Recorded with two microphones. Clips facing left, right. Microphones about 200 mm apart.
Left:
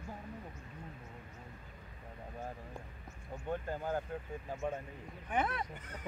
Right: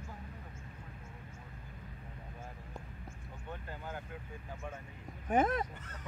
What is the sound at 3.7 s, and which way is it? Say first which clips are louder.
Speech: left 7 dB; 40° left (ahead or behind).